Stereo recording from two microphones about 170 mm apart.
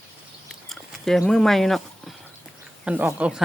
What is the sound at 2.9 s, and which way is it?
Speech, 5° right (ahead or behind).